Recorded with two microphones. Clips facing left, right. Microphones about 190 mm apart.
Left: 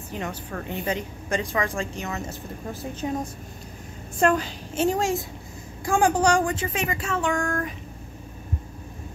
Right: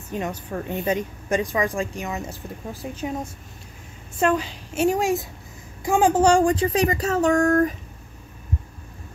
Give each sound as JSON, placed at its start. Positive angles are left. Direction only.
{"t": 0.1, "sound": "a woman's voice", "side_deg": -20}
{"t": 4.2, "sound": "a woman's voice", "side_deg": -10}